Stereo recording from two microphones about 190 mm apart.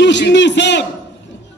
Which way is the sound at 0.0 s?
70° left (ahead or behind).